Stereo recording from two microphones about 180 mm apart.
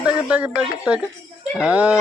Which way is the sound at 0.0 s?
5° right (ahead or behind).